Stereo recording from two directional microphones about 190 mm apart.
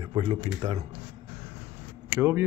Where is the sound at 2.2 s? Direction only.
15° right (ahead or behind).